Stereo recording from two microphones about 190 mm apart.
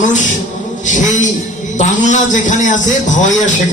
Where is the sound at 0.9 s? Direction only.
40° left (ahead or behind).